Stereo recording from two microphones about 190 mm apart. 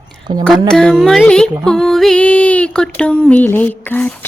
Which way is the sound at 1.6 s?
5° left (ahead or behind).